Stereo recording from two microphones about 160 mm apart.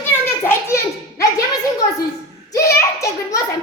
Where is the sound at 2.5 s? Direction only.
20° left (ahead or behind).